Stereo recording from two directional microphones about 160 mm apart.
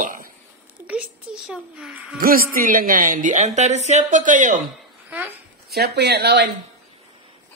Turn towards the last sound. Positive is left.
turn(degrees=-90)